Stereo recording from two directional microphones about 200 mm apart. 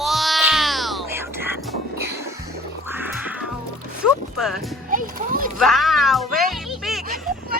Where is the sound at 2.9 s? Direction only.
10° right (ahead or behind).